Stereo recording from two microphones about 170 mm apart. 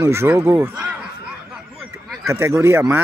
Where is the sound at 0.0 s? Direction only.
15° right (ahead or behind).